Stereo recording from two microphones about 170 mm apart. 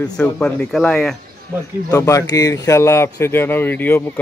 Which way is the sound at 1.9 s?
20° left (ahead or behind).